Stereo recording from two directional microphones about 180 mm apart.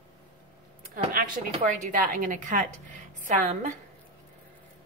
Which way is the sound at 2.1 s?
45° right (ahead or behind).